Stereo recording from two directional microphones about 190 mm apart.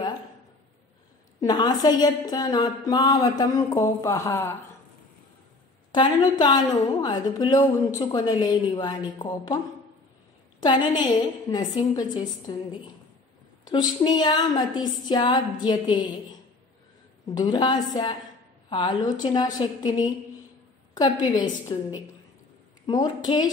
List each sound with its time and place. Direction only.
1.4 s a woman's voice: 20° left (ahead or behind)
5.9 s a woman's voice: 20° left (ahead or behind)
10.6 s a woman's voice: 25° left (ahead or behind)
13.7 s a woman's voice: 20° left (ahead or behind)